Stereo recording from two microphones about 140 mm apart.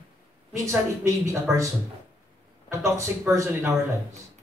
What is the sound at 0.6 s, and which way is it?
Speech, 20° right (ahead or behind).